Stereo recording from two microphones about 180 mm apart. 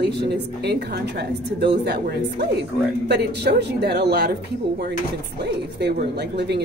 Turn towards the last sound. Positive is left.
turn(degrees=-70)  # may be behind; listen again after turning